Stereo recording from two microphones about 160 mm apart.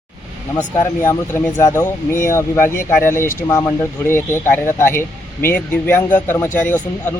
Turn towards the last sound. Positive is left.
turn(degrees=10)  # may be behind; listen again after turning